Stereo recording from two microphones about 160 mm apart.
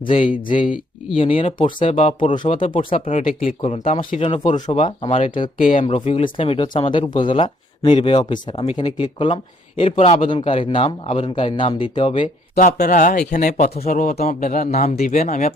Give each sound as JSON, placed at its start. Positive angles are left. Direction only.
{"t": 0.0, "sound": "speech", "side_deg": 35}
{"t": 0.7, "sound": "speech", "side_deg": -5}
{"t": 1.2, "sound": "speech", "side_deg": 35}
{"t": 2.1, "sound": "a man's voice", "side_deg": 30}
{"t": 4.6, "sound": "speech", "side_deg": 35}
{"t": 12.5, "sound": "a man's voice", "side_deg": 55}